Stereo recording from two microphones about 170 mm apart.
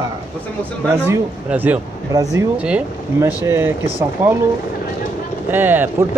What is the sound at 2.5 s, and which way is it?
Speech, 5° right (ahead or behind).